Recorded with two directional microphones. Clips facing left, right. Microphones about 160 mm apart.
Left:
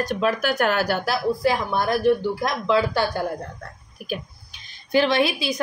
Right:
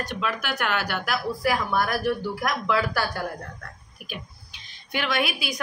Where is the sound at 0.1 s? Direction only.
40° left (ahead or behind); by 3.3 s 25° left (ahead or behind).